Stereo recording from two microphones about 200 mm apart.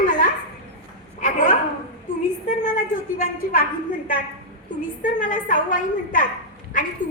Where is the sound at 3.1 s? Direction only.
45° left (ahead or behind).